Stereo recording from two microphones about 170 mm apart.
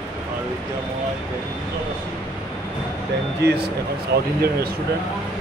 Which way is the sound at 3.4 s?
75° right (ahead or behind).